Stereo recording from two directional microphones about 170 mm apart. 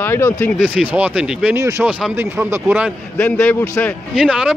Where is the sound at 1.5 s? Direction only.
15° right (ahead or behind).